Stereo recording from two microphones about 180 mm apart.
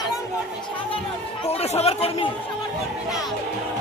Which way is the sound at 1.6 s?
35° left (ahead or behind).